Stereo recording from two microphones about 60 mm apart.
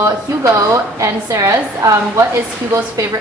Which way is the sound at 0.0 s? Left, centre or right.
Right.